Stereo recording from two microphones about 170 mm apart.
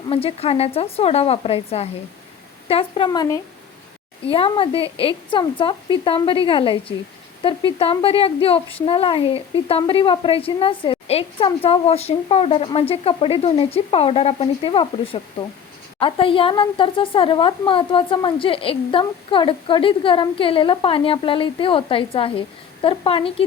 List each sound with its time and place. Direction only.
0.1 s a woman's voice: 35° left (ahead or behind)
4.3 s a woman's voice: 30° left (ahead or behind)